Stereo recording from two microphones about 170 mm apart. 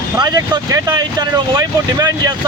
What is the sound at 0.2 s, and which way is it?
Speech, 20° right (ahead or behind).